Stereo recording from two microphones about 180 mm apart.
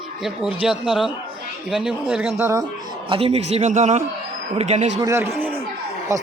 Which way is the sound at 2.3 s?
15° right (ahead or behind).